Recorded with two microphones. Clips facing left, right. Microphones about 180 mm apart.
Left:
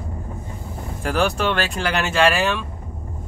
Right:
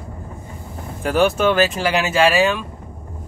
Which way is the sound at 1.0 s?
Centre (ahead or behind).